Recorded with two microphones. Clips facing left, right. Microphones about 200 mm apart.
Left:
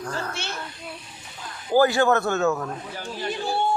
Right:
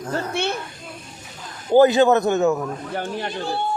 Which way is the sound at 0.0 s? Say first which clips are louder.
Right 5 dB; 20° right (ahead or behind).